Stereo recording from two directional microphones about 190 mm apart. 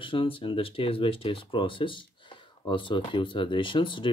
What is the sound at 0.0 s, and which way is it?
Speech, 25° left (ahead or behind).